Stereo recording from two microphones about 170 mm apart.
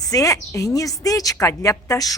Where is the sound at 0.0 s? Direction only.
20° left (ahead or behind).